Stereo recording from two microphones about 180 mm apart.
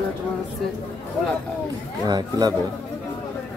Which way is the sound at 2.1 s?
20° right (ahead or behind).